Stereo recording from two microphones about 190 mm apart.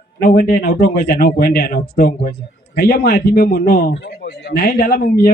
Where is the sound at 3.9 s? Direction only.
60° left (ahead or behind).